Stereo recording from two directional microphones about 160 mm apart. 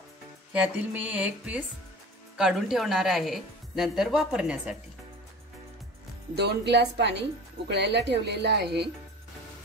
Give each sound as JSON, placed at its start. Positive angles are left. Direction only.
{"t": 0.5, "sound": "speech", "side_deg": -10}
{"t": 6.3, "sound": "speech", "side_deg": -90}